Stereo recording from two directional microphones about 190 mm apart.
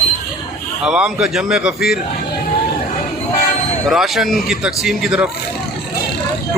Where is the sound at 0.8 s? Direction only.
5° right (ahead or behind).